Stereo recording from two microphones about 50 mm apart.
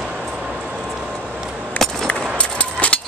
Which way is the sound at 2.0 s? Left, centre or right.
Left.